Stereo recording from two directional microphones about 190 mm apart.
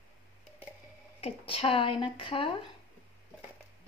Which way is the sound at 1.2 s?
30° left (ahead or behind).